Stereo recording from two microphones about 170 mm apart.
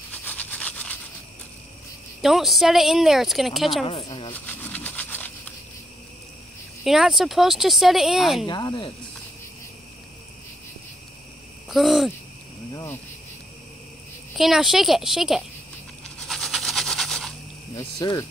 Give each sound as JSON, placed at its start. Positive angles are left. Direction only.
{"t": 0.1, "sound": "toothbrush", "side_deg": 10}
{"t": 2.2, "sound": "speech", "side_deg": 0}
{"t": 3.8, "sound": "speech", "side_deg": 30}
{"t": 4.3, "sound": "a sound", "side_deg": 10}
{"t": 6.8, "sound": "speech", "side_deg": 0}
{"t": 8.5, "sound": "speech", "side_deg": 25}
{"t": 11.7, "sound": "speech", "side_deg": 0}
{"t": 12.7, "sound": "cricket", "side_deg": 15}
{"t": 14.3, "sound": "speech", "side_deg": 0}
{"t": 16.2, "sound": "a sound", "side_deg": 0}
{"t": 17.7, "sound": "speech", "side_deg": 20}